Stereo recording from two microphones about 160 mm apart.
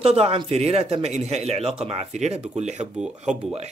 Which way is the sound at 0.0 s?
40° right (ahead or behind).